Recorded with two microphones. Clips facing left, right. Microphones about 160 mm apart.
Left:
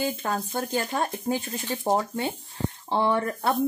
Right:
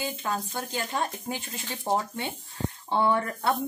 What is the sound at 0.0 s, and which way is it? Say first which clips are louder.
Speech: left 3 dB; 45° left (ahead or behind).